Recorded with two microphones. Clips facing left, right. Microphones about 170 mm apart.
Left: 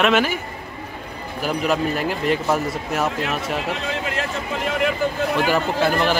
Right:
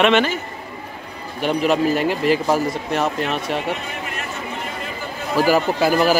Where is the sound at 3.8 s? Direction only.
90° left.